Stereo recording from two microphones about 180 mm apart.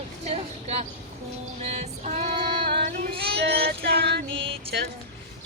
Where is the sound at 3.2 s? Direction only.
65° right (ahead or behind).